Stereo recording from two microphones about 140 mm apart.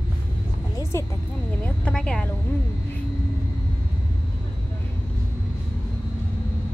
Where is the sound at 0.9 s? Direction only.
20° left (ahead or behind).